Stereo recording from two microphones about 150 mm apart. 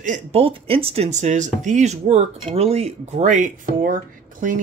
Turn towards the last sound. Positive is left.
turn(degrees=-65)  # may be behind; listen again after turning